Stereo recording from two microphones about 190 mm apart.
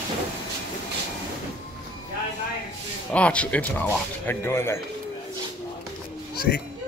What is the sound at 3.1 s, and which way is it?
Speech, 5° left (ahead or behind).